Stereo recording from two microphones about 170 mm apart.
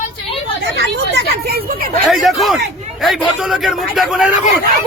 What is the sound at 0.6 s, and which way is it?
Speech, 75° right (ahead or behind).